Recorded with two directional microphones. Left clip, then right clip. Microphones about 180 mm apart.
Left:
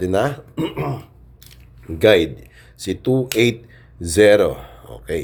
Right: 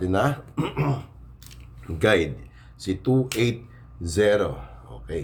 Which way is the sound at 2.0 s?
35° left (ahead or behind).